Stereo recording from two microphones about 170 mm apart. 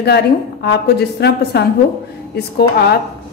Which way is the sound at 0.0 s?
75° left (ahead or behind).